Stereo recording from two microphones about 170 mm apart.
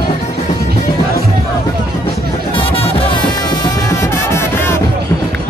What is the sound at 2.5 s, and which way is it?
Music, 35° left (ahead or behind).